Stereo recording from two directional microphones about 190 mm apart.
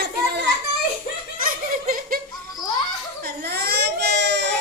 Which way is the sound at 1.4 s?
50° right (ahead or behind).